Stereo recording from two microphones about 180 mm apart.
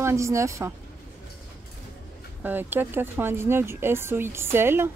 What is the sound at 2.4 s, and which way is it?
Speech, 10° right (ahead or behind).